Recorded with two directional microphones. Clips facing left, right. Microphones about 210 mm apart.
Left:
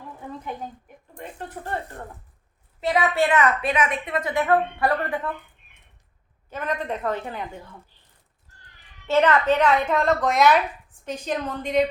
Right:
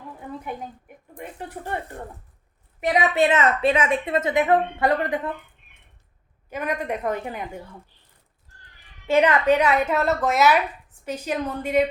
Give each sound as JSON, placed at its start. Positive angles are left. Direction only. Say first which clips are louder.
{"t": 1.1, "sound": "a woman's voice", "louder": "right 1 dB", "side_deg": -10}
{"t": 2.8, "sound": "a woman's voice", "louder": "right 2 dB", "side_deg": -20}
{"t": 6.5, "sound": "a woman's voice", "louder": "right 1 dB", "side_deg": -10}
{"t": 9.0, "sound": "a woman's voice", "louder": "right 1 dB", "side_deg": -10}